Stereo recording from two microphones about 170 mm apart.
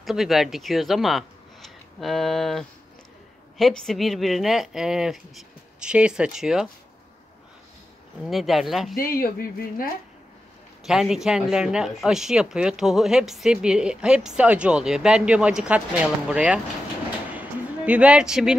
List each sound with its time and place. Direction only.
0.0 s speech: centre (ahead or behind)
8.3 s speech: centre (ahead or behind)
8.9 s speech: 55° left (ahead or behind)
10.8 s speech: 5° right (ahead or behind)
17.3 s a sound: 10° right (ahead or behind)